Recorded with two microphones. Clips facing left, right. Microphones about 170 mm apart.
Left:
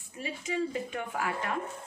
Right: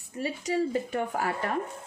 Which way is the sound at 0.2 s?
40° right (ahead or behind).